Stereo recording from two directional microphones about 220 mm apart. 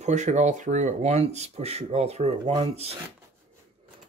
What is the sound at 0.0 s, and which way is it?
Speech, 30° right (ahead or behind).